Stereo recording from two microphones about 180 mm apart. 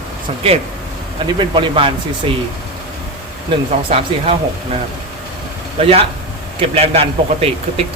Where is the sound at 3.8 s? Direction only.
35° right (ahead or behind).